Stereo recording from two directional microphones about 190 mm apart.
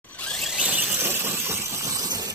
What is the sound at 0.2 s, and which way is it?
Squeal, centre (ahead or behind).